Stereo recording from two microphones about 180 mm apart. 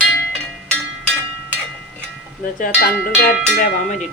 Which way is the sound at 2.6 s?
55° left (ahead or behind).